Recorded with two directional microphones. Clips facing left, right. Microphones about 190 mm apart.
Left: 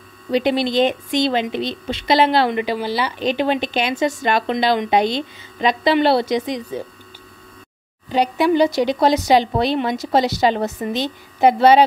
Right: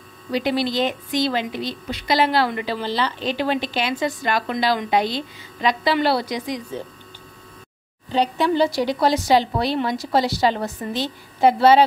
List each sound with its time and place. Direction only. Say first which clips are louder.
0.3 s a woman's voice: left 4 dB; 20° left (ahead or behind)
8.1 s a woman's voice: left 3 dB; 15° left (ahead or behind)